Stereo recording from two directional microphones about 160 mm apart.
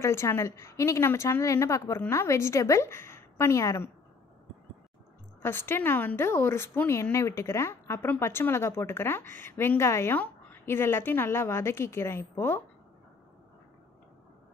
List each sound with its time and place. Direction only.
0.0 s a woman's voice: 15° left (ahead or behind)
5.4 s a woman's voice: 15° left (ahead or behind)